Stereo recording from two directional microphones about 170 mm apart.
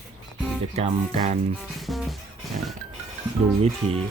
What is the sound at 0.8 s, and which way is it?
Speech, 40° right (ahead or behind).